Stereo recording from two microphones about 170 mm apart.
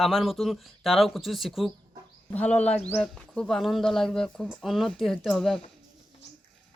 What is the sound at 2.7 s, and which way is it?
Speech, 40° left (ahead or behind).